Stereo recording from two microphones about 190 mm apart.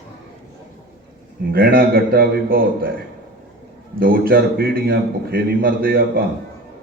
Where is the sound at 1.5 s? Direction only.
50° right (ahead or behind).